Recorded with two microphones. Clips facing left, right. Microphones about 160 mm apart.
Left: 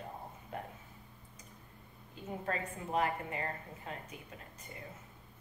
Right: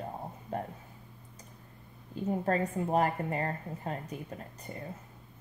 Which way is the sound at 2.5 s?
40° right (ahead or behind).